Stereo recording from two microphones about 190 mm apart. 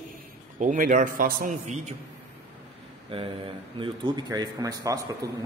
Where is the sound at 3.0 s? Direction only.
30° right (ahead or behind).